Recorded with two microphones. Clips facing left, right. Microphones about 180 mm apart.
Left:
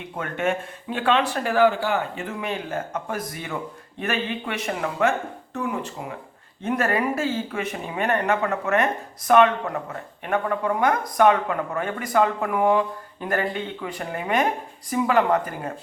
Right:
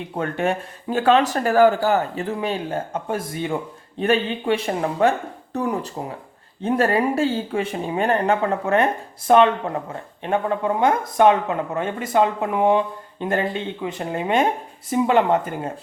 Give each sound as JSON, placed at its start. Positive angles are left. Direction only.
{"t": 0.2, "sound": "speech", "side_deg": -35}